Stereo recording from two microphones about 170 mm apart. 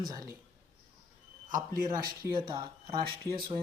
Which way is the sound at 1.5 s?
50° right (ahead or behind).